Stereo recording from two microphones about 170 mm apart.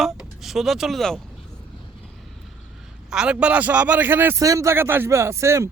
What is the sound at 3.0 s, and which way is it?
A man's voice, 5° right (ahead or behind).